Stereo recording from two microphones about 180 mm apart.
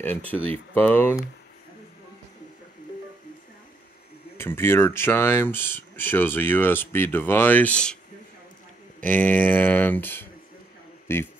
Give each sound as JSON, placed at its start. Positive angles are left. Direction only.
{"t": 0.3, "sound": "speech", "side_deg": 10}
{"t": 4.4, "sound": "speech", "side_deg": 15}
{"t": 9.0, "sound": "speech", "side_deg": 10}